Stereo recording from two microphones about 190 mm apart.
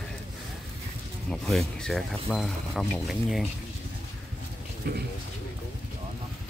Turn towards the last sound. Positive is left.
turn(degrees=-60)  # may be behind; listen again after turning